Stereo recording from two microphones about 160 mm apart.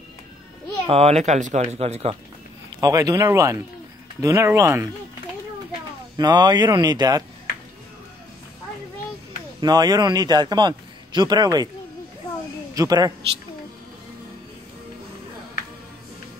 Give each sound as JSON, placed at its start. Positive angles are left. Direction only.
{"t": 0.8, "sound": "speech", "side_deg": -40}
{"t": 2.8, "sound": "speech", "side_deg": -20}
{"t": 6.1, "sound": "speech", "side_deg": -25}
{"t": 9.6, "sound": "speech", "side_deg": -25}
{"t": 12.7, "sound": "speech", "side_deg": -25}